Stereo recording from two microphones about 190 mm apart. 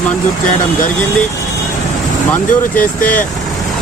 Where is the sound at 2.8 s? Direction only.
45° left (ahead or behind).